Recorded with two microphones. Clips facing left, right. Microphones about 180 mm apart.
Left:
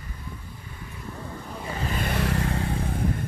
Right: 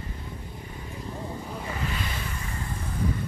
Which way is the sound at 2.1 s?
70° left (ahead or behind).